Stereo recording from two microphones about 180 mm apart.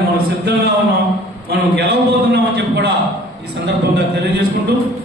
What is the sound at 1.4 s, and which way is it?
A man's voice, 60° right (ahead or behind).